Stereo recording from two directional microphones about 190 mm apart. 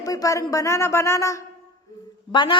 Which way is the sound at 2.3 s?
25° left (ahead or behind).